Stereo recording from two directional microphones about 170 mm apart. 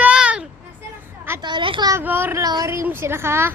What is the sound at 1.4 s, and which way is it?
Speech, 25° right (ahead or behind).